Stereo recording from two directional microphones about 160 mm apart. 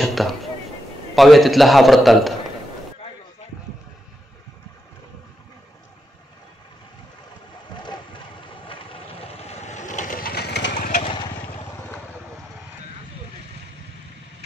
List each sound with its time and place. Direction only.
0.0 s chopping: centre (ahead or behind)
1.1 s a man's voice: centre (ahead or behind)
7.7 s vehicle: 30° left (ahead or behind); by 10.9 s 90° left